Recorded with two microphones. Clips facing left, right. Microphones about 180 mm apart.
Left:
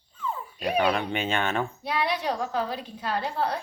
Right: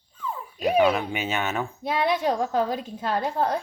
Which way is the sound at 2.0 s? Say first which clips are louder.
Right 5 dB; 45° right (ahead or behind).